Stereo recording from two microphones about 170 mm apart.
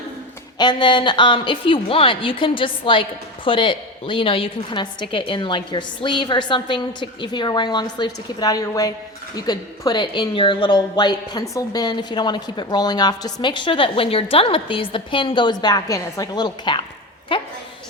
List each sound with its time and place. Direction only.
0.6 s a woman's voice: 30° left (ahead or behind)